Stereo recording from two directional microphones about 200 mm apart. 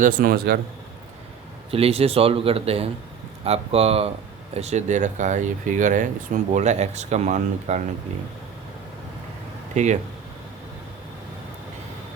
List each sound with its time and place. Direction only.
0.0 s speech: 45° right (ahead or behind)
1.7 s speech: 30° right (ahead or behind)
9.7 s speech: 35° right (ahead or behind)